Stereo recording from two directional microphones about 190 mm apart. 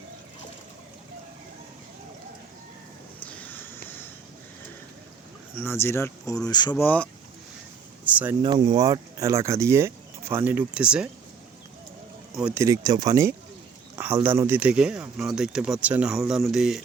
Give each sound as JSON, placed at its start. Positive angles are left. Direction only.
{"t": 3.2, "sound": "a sound", "side_deg": 10}
{"t": 5.5, "sound": "speech", "side_deg": 10}
{"t": 6.8, "sound": "speech", "side_deg": 10}
{"t": 8.0, "sound": "a sound", "side_deg": -10}
{"t": 8.4, "sound": "speech", "side_deg": -25}
{"t": 12.3, "sound": "speech", "side_deg": -5}
{"t": 12.5, "sound": "speech", "side_deg": -20}